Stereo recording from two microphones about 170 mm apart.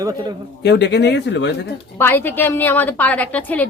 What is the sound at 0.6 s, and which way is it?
Speech, 90° left.